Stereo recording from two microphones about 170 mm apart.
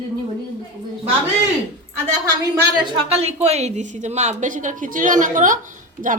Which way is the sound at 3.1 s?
40° right (ahead or behind).